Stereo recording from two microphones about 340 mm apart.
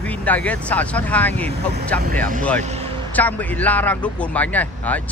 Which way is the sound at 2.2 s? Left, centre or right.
Right.